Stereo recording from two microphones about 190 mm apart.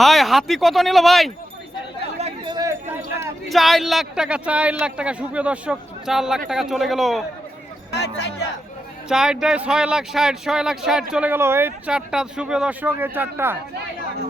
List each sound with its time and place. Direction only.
0.0 s a man's voice: centre (ahead or behind)
2.1 s chatter: 35° right (ahead or behind)
3.5 s a man's voice: centre (ahead or behind)
7.9 s speech: 60° left (ahead or behind)
9.0 s a man's voice: 5° right (ahead or behind)